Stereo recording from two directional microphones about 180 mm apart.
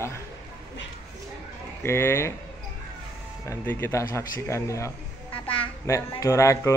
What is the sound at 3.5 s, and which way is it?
A man's voice, 10° left (ahead or behind).